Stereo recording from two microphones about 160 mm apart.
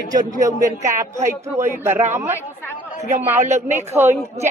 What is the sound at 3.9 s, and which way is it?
Speech, 15° right (ahead or behind).